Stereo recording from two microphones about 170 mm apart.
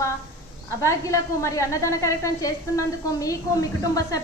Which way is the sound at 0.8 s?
20° left (ahead or behind).